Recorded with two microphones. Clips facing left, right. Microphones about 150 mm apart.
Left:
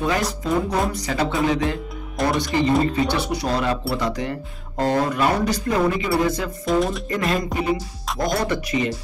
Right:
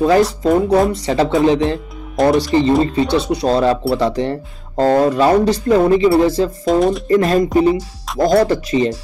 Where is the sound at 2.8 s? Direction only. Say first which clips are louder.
Right 5 dB; 25° right (ahead or behind).